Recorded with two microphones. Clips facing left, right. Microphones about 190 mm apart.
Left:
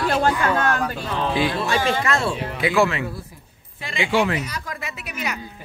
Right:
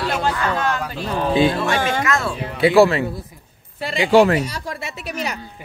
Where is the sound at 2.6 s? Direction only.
30° right (ahead or behind).